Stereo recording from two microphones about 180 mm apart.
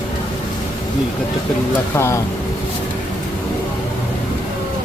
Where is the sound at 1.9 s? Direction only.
15° left (ahead or behind).